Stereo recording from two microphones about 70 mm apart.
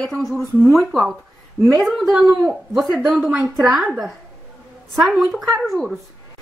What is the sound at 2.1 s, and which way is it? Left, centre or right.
A woman's voice, centre.